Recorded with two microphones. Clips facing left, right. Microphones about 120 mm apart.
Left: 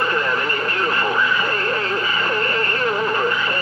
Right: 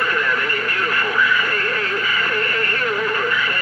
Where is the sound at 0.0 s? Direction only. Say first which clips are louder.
Left 1 dB; 30° left (ahead or behind).